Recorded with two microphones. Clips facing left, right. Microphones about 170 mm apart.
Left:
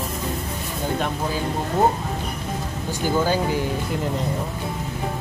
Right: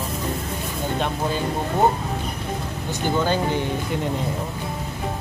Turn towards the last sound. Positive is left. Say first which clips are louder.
# even
turn(degrees=5)  # may be behind; listen again after turning